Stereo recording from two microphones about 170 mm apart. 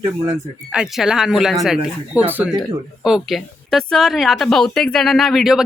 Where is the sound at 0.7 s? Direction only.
5° right (ahead or behind).